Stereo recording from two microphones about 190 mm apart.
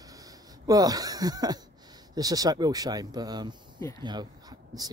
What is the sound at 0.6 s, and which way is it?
Speech, 20° right (ahead or behind).